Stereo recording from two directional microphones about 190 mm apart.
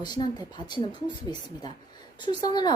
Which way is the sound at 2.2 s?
20° left (ahead or behind).